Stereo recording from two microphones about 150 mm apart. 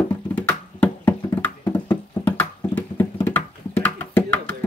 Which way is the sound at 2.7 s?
10° left (ahead or behind).